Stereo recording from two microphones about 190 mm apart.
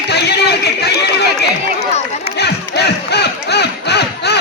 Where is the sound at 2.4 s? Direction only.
60° left (ahead or behind).